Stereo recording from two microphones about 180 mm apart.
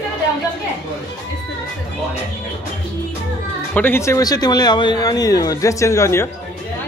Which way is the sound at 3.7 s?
10° left (ahead or behind).